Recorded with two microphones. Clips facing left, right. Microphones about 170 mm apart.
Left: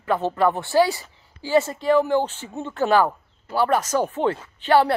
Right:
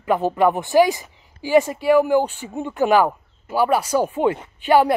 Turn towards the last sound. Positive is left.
turn(degrees=-15)  # may be behind; listen again after turning